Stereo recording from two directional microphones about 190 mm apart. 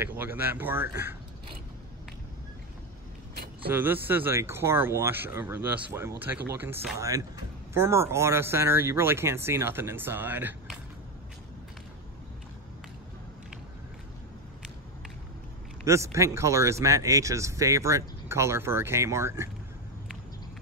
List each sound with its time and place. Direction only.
0.0 s speech: 10° right (ahead or behind)
3.6 s speech: 10° right (ahead or behind)
15.8 s speech: 15° right (ahead or behind)